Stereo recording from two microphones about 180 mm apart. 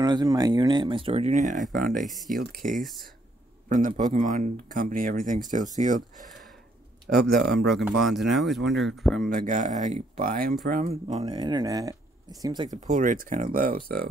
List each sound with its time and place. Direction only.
0.0 s speech: 25° right (ahead or behind); by 2.0 s 50° right (ahead or behind)
2.0 s speech: centre (ahead or behind)
3.6 s speech: 45° right (ahead or behind)
7.2 s speech: 60° right (ahead or behind)
7.7 s speech: centre (ahead or behind)
9.3 s speech: 45° right (ahead or behind)
11.1 s speech: 35° right (ahead or behind)
11.3 s speech: 25° right (ahead or behind)
12.7 s speech: 45° right (ahead or behind)